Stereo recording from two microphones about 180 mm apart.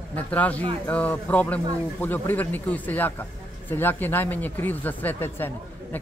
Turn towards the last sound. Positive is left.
turn(degrees=10)  # may be behind; listen again after turning